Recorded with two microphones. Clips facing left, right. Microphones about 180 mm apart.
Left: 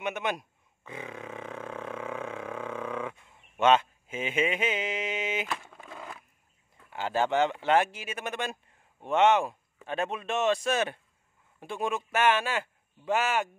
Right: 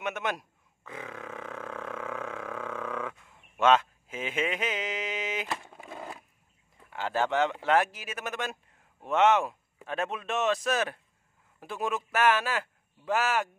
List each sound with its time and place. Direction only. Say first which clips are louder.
0.0 s speech: left 1 dB; centre (ahead or behind)
1.9 s a sound: left 1 dB; 5° left (ahead or behind)
6.9 s speech: left 1 dB; centre (ahead or behind)